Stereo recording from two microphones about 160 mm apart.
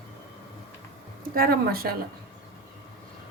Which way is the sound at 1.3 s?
70° right (ahead or behind).